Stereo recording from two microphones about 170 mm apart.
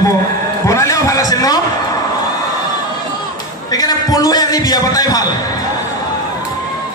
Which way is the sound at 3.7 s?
20° left (ahead or behind).